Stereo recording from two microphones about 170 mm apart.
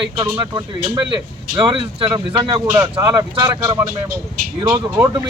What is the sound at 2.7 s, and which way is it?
Speech, 15° right (ahead or behind).